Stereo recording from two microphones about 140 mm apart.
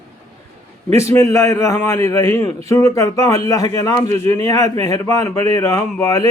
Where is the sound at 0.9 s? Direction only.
20° left (ahead or behind).